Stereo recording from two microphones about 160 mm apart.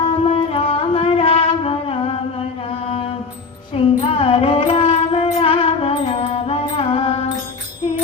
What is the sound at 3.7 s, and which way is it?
Music, 35° left (ahead or behind).